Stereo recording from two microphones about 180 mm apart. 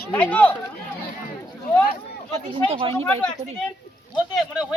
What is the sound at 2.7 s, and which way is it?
Speech, 30° right (ahead or behind).